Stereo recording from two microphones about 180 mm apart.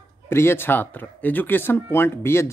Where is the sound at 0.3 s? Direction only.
15° left (ahead or behind).